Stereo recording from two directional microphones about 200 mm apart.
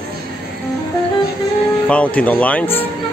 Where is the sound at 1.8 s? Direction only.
5° left (ahead or behind).